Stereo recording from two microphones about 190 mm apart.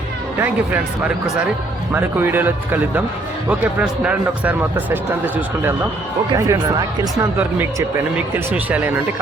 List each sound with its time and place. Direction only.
0.3 s speech: 10° right (ahead or behind)